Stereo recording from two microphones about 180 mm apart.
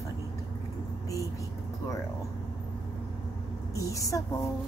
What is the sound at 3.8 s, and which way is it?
Speech, 20° left (ahead or behind).